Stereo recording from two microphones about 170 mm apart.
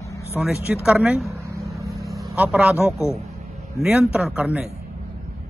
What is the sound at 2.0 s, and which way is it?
Vehicle, centre (ahead or behind).